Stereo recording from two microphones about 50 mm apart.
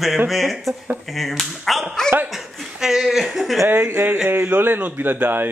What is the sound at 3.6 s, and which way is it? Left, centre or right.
A man's voice, right.